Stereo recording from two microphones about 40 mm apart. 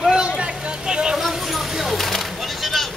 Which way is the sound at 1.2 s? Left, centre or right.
Centre.